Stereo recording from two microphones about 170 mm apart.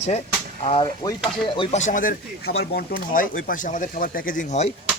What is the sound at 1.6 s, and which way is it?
Speech, 40° left (ahead or behind).